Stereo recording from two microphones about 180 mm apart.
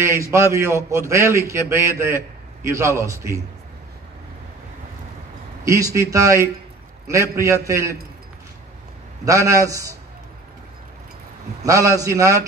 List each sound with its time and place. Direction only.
0.0 s a man's voice: 15° right (ahead or behind)
5.9 s a man's voice: 15° right (ahead or behind)
9.2 s a man's voice: 15° right (ahead or behind)
11.6 s a man's voice: 20° right (ahead or behind)